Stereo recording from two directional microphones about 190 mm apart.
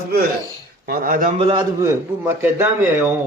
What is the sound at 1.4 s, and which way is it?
Speech, 25° right (ahead or behind).